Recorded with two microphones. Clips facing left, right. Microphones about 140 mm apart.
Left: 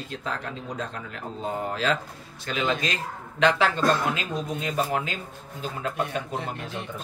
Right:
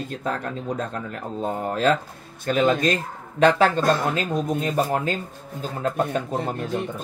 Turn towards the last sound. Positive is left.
turn(degrees=-45)  # may be behind; listen again after turning